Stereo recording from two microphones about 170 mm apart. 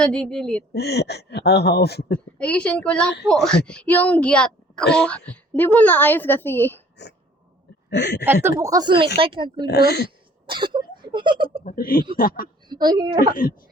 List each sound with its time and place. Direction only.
0.0 s speech: 5° left (ahead or behind)
0.7 s speech: 75° left (ahead or behind)
2.4 s a woman's voice: 5° left (ahead or behind)
7.9 s speech: 90° left
8.2 s speech: 15° right (ahead or behind); by 9.6 s 30° right (ahead or behind)
9.6 s speech: 75° left (ahead or behind)
10.4 s speech: 30° right (ahead or behind)
11.6 s speech: 55° left (ahead or behind)
12.6 s a woman's voice: 25° right (ahead or behind)